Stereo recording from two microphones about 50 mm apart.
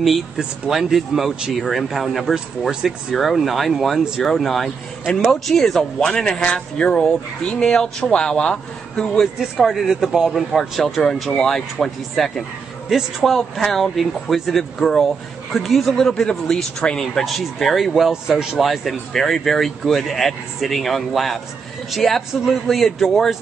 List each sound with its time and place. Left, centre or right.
0.4 s speech: centre
9.0 s speech: centre
9.4 s speech: centre
10.8 s speech: centre
17.2 s speech: centre
22.3 s speech: centre